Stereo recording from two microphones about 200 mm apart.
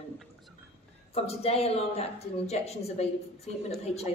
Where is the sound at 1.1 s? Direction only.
30° left (ahead or behind).